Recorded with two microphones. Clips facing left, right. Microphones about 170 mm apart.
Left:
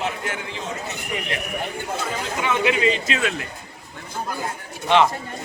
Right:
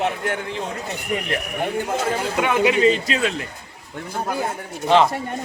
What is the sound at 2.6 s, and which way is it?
Speech, 35° right (ahead or behind).